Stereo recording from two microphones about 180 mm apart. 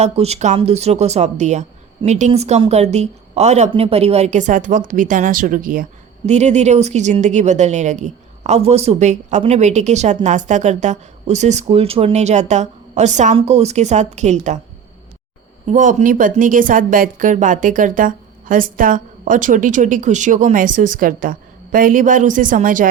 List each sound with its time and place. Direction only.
0.0 s a woman's voice: 35° right (ahead or behind)
6.2 s a woman's voice: 40° right (ahead or behind)
15.6 s a woman's voice: 45° right (ahead or behind)